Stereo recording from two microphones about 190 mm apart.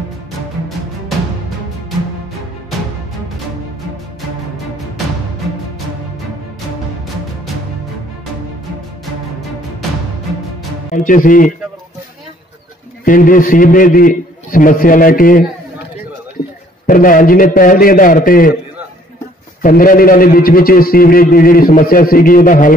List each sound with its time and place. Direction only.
10.9 s a man's voice: 45° left (ahead or behind)
13.0 s a man's voice: 45° left (ahead or behind)
16.8 s a man's voice: 45° left (ahead or behind)
19.6 s a man's voice: 45° left (ahead or behind)